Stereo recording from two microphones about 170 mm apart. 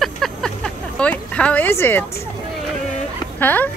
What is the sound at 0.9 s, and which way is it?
Speech, 5° left (ahead or behind).